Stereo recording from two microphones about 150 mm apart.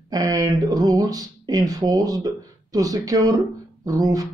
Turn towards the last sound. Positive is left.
turn(degrees=-25)  # may be behind; listen again after turning